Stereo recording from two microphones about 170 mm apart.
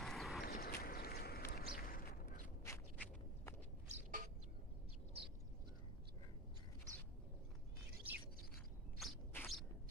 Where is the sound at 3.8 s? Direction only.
40° right (ahead or behind).